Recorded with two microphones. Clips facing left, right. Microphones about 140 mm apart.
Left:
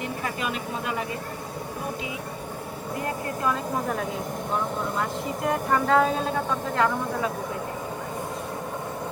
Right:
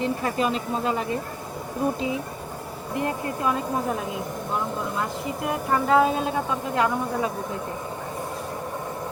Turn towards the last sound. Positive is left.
turn(degrees=-15)  # may be behind; listen again after turning